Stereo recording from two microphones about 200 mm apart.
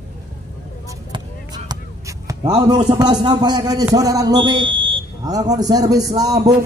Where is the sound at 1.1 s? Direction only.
20° right (ahead or behind).